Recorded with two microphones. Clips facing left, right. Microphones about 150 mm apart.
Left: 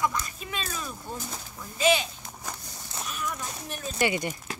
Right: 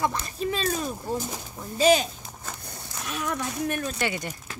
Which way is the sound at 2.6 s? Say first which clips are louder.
Right 1 dB; 80° right.